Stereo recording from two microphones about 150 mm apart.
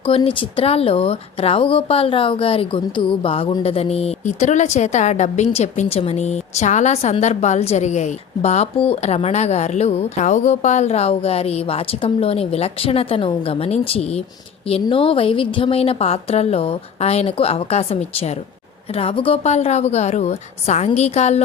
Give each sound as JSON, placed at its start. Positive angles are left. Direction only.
{"t": 0.2, "sound": "a woman's voice", "side_deg": 35}
{"t": 18.9, "sound": "speech", "side_deg": 40}